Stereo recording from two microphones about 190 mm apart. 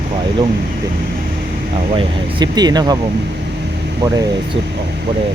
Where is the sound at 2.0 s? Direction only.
20° right (ahead or behind).